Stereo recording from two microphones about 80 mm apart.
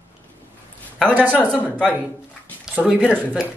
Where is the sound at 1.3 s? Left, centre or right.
Centre.